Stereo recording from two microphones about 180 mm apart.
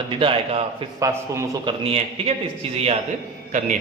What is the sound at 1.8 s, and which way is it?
A man's voice, 30° right (ahead or behind).